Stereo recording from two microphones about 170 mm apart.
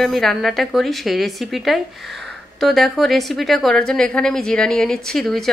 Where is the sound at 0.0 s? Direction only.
Centre (ahead or behind).